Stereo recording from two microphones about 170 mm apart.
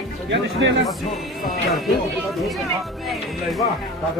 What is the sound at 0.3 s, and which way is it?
Speech, 90° right.